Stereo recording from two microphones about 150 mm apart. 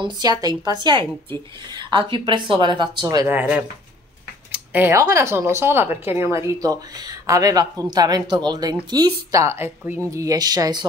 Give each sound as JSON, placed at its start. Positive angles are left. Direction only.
{"t": 0.0, "sound": "speech", "side_deg": -25}
{"t": 3.3, "sound": "speech", "side_deg": -10}